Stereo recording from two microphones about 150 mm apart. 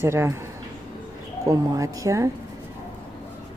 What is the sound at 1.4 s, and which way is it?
Speech, 25° right (ahead or behind).